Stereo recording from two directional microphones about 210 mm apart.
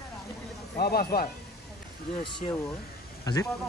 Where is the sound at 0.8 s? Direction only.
45° left (ahead or behind).